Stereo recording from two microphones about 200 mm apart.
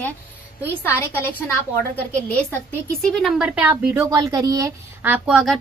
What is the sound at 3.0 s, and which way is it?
A woman's voice, centre (ahead or behind).